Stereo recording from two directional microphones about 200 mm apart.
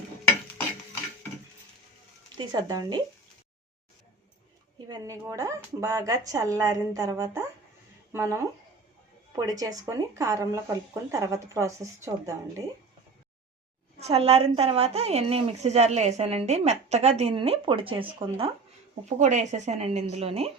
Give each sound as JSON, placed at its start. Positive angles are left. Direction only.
{"t": 2.5, "sound": "speech", "side_deg": -20}
{"t": 4.9, "sound": "speech", "side_deg": -15}
{"t": 14.0, "sound": "a woman's voice", "side_deg": -30}